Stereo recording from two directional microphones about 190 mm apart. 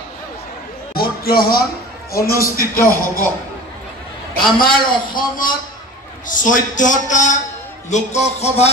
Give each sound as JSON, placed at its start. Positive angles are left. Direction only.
{"t": 0.9, "sound": "basketball bounce", "side_deg": 50}
{"t": 2.1, "sound": "a man's voice", "side_deg": 50}
{"t": 4.6, "sound": "a man's voice", "side_deg": 50}
{"t": 7.9, "sound": "music", "side_deg": 35}